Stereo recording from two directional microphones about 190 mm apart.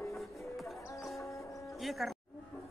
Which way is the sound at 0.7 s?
15° left (ahead or behind).